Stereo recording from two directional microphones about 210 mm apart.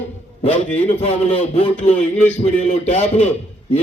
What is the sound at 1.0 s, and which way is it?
Speech, 25° left (ahead or behind).